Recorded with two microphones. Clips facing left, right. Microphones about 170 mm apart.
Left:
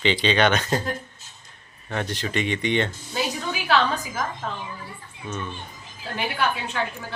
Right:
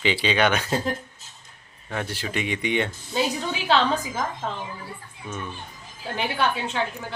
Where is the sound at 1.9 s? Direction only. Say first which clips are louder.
Left 2 dB; 5° right (ahead or behind).